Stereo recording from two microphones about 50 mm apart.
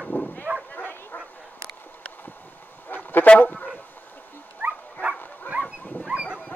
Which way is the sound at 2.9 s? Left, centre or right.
Left.